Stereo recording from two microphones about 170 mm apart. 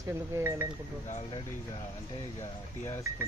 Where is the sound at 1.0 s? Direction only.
45° left (ahead or behind).